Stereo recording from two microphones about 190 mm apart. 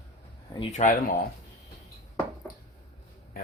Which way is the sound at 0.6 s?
35° left (ahead or behind).